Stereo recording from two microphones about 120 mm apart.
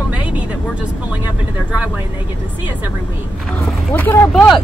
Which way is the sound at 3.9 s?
20° left (ahead or behind).